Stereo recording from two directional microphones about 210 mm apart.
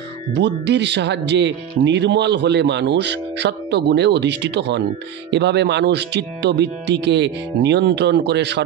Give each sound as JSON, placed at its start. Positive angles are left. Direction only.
{"t": 0.3, "sound": "speech", "side_deg": -55}